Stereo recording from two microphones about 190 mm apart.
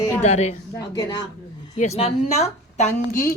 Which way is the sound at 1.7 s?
35° left (ahead or behind).